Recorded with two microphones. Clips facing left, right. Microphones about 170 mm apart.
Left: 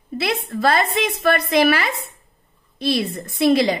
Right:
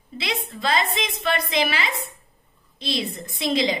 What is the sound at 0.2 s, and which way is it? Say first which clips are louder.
A woman's voice: left 7 dB; 60° left (ahead or behind).